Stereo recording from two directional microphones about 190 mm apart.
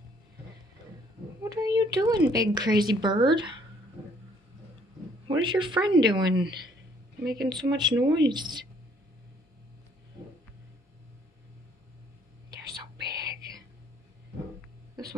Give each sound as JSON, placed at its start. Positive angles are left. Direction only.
{"t": 1.4, "sound": "a sound", "side_deg": -20}
{"t": 2.2, "sound": "a woman's voice", "side_deg": -20}
{"t": 5.3, "sound": "a woman's voice", "side_deg": -25}
{"t": 12.4, "sound": "whispering", "side_deg": -20}